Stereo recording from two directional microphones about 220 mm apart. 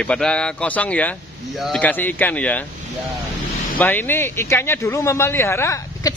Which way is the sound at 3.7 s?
10° left (ahead or behind).